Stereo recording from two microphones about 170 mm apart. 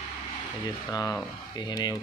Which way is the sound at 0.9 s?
20° left (ahead or behind).